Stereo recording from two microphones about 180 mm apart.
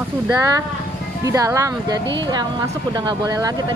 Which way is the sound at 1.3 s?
15° right (ahead or behind).